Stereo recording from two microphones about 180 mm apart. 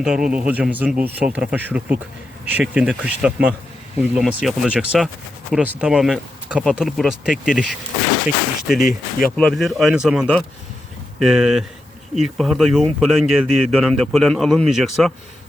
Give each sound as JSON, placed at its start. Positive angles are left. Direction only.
{"t": 0.0, "sound": "speech", "side_deg": -5}